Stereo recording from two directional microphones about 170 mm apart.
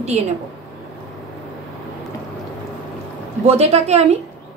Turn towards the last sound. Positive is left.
turn(degrees=-40)  # may be behind; listen again after turning